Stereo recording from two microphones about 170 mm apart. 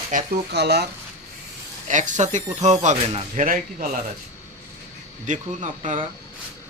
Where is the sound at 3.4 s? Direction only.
50° right (ahead or behind).